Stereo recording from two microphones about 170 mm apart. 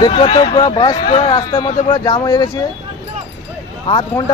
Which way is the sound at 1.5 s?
25° left (ahead or behind).